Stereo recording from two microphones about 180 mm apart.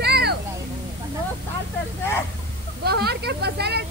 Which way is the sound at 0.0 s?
65° right (ahead or behind).